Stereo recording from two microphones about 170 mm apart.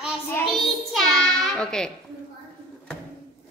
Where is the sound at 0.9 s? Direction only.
Centre (ahead or behind).